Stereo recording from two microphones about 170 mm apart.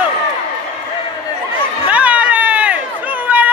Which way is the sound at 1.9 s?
10° right (ahead or behind).